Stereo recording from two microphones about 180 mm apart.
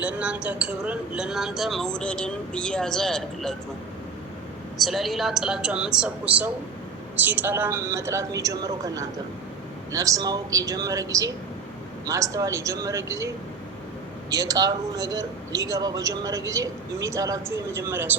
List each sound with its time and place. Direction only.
0.0 s speech: 5° right (ahead or behind)
4.8 s a woman's voice: centre (ahead or behind)